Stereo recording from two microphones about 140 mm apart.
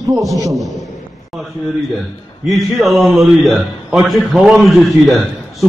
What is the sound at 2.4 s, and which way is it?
A man's voice, centre (ahead or behind).